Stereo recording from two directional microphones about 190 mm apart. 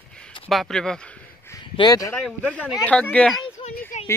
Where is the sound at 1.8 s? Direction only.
20° left (ahead or behind).